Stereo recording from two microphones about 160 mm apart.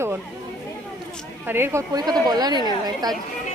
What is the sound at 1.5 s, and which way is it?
Speech, 15° right (ahead or behind).